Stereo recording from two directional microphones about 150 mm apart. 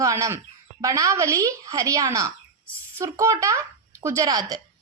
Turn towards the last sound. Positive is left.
turn(degrees=-25)  # may be behind; listen again after turning